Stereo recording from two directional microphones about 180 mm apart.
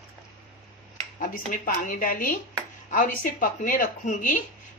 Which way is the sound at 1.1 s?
50° left (ahead or behind).